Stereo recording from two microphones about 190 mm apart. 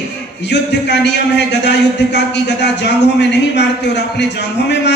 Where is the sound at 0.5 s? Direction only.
65° left (ahead or behind).